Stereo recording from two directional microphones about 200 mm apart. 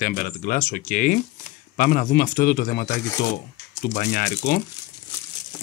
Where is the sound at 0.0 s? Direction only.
45° left (ahead or behind).